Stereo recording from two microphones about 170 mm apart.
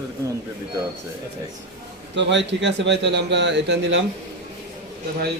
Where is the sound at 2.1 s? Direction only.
90° right.